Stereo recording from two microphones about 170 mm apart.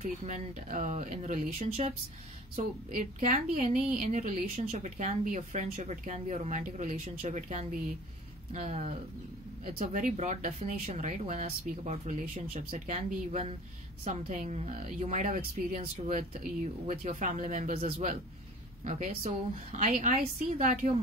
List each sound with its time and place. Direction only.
0.2 s a woman's voice: 40° right (ahead or behind)
9.9 s a woman's voice: 45° right (ahead or behind)